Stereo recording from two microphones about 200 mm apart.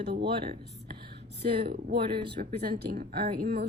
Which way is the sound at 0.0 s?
55° right (ahead or behind).